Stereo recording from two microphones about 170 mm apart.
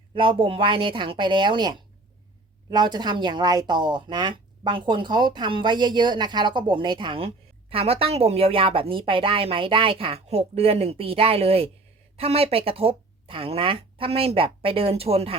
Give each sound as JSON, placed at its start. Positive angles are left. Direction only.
{"t": 0.1, "sound": "a woman's voice", "side_deg": -30}